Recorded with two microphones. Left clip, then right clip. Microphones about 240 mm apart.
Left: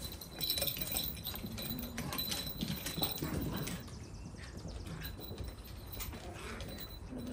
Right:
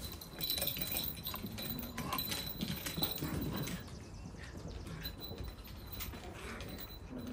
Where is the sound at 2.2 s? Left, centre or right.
Centre.